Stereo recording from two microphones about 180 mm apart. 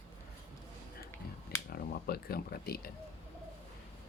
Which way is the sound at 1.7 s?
60° left (ahead or behind).